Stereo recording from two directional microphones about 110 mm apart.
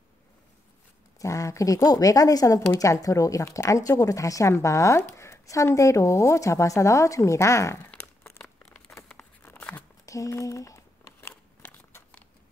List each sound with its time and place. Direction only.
1.2 s speech: 30° left (ahead or behind)
7.9 s crumpling: 15° left (ahead or behind)
10.0 s a sound: 30° left (ahead or behind)